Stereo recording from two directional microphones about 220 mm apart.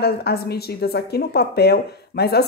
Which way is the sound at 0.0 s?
45° left (ahead or behind).